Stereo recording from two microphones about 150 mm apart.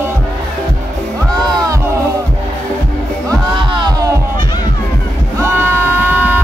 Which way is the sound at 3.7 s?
25° right (ahead or behind).